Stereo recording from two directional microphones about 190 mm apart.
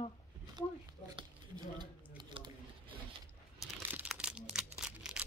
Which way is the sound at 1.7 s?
25° right (ahead or behind).